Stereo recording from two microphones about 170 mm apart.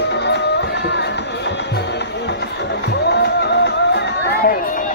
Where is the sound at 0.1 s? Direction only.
90° left.